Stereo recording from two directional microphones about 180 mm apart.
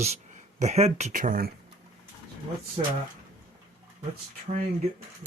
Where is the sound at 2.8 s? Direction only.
40° right (ahead or behind).